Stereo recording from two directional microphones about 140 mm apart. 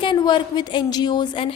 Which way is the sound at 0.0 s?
35° left (ahead or behind).